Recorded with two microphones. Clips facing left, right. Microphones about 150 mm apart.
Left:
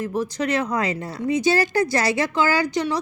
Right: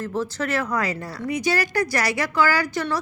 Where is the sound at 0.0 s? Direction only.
15° left (ahead or behind).